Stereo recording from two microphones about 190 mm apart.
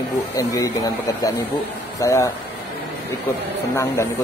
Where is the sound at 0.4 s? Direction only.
15° left (ahead or behind).